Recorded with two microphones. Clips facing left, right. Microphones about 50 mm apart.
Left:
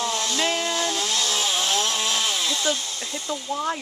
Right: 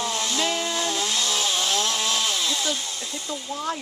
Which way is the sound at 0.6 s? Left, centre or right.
Centre.